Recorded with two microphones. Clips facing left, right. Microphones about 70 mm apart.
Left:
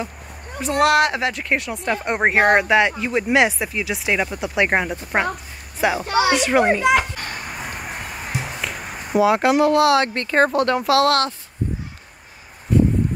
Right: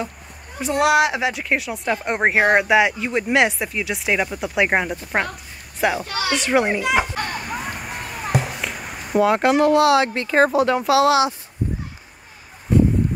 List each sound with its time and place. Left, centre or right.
0.6 s a child's voice: centre
6.0 s speech: left
6.3 s speech: centre
8.5 s speech: centre